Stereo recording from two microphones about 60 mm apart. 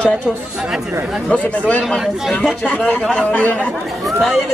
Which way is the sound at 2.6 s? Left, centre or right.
Left.